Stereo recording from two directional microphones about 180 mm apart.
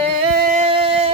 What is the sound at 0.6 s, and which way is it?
Music, 30° right (ahead or behind).